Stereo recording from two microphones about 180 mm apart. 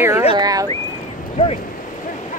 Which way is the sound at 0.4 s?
20° right (ahead or behind).